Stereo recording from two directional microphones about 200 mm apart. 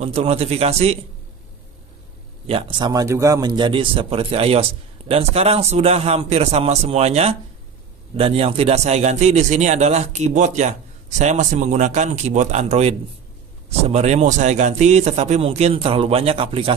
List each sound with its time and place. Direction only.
0.0 s a man's voice: 30° right (ahead or behind)
2.4 s a man's voice: 25° right (ahead or behind)